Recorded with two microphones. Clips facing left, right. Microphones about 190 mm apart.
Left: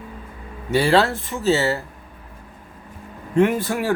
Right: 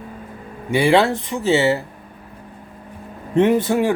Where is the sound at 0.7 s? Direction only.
15° right (ahead or behind).